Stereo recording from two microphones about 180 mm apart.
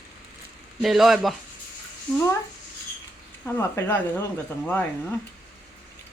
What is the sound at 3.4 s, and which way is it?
Speech, 15° left (ahead or behind).